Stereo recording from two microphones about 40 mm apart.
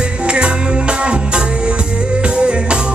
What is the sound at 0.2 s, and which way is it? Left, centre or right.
Music, right.